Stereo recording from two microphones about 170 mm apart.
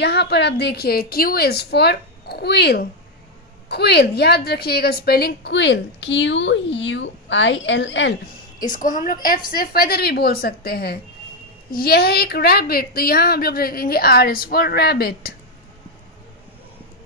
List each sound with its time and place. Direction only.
0.0 s a woman's voice: 80° left
8.5 s a woman's voice: 50° left (ahead or behind)